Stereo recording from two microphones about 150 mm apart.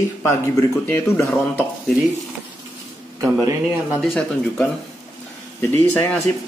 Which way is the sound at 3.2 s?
25° right (ahead or behind).